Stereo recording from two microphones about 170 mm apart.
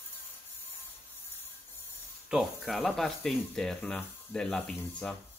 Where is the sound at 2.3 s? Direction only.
Centre (ahead or behind).